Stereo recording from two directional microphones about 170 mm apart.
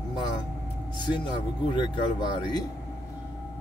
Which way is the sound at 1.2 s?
25° left (ahead or behind).